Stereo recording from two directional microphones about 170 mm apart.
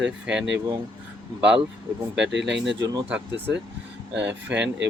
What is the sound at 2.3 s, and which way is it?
Speech, 90° right.